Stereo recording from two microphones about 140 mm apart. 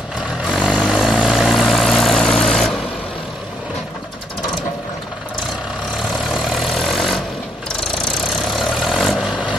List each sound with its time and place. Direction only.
0.5 s vehicle: centre (ahead or behind)
6.3 s vehicle: centre (ahead or behind)